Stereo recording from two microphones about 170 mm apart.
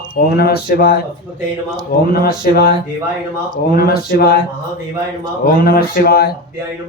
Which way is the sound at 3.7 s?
65° left (ahead or behind).